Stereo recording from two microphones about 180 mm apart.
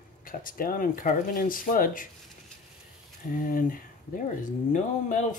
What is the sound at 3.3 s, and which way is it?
Speech, 50° left (ahead or behind).